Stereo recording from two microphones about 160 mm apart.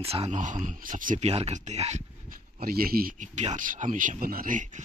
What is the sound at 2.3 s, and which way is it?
Speech, 70° right (ahead or behind).